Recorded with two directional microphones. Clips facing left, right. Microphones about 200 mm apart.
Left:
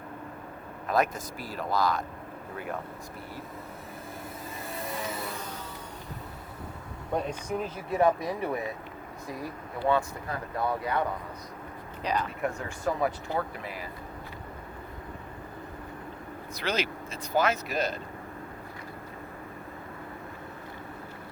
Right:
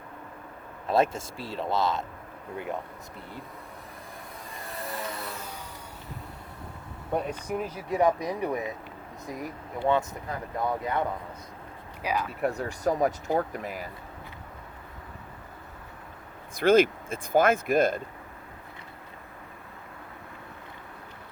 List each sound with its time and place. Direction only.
0.9 s speech: 25° right (ahead or behind)
4.6 s vehicle: centre (ahead or behind)
7.1 s speech: 10° right (ahead or behind)
12.0 s speech: 10° right (ahead or behind)
12.4 s speech: 35° right (ahead or behind)
16.6 s speech: 50° right (ahead or behind)